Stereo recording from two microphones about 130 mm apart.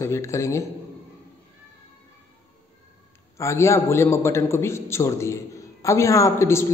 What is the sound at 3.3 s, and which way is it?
A man's voice, 20° left (ahead or behind).